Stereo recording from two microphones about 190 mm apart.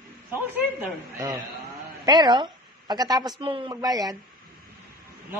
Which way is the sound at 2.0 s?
20° right (ahead or behind).